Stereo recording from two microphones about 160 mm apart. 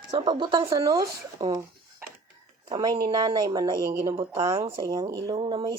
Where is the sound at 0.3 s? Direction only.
30° right (ahead or behind).